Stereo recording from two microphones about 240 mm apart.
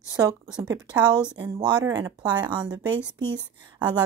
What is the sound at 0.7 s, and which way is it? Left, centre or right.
Speech, centre.